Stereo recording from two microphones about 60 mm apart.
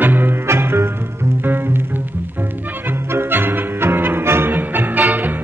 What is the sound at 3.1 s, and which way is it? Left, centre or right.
Music, right.